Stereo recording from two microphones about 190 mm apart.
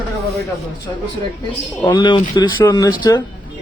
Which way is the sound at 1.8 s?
25° left (ahead or behind).